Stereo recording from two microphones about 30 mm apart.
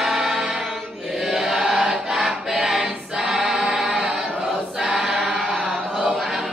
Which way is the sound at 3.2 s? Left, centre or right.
Right.